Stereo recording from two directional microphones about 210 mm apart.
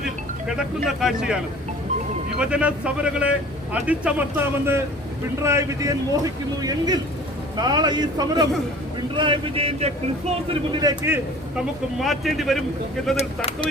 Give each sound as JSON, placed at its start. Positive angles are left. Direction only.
{"t": 0.4, "sound": "speech", "side_deg": 0}
{"t": 2.4, "sound": "a man's voice", "side_deg": -5}
{"t": 13.1, "sound": "speech", "side_deg": 30}